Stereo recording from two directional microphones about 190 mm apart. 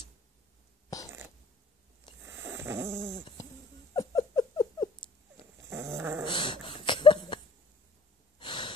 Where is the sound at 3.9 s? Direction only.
20° left (ahead or behind).